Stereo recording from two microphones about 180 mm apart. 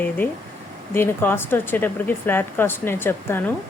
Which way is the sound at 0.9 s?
10° left (ahead or behind).